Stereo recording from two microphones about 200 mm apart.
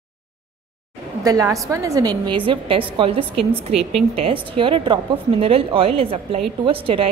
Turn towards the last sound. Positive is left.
turn(degrees=-25)  # may be behind; listen again after turning